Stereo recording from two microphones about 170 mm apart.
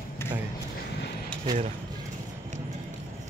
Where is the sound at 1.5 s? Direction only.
20° right (ahead or behind).